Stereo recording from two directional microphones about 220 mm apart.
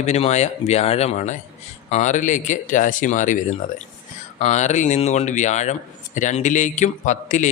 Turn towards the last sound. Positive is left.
turn(degrees=35)  # may be behind; listen again after turning